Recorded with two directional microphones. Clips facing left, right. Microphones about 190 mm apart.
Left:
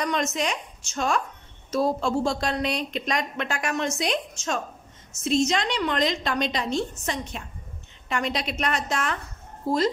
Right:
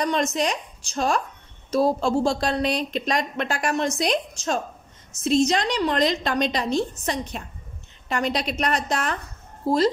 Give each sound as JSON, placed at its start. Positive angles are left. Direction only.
{"t": 0.0, "sound": "speech", "side_deg": -35}